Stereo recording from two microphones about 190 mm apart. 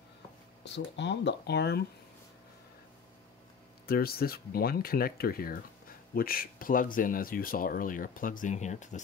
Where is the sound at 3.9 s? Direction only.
50° left (ahead or behind).